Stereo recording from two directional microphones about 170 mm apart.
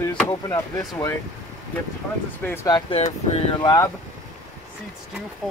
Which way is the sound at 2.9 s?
35° left (ahead or behind).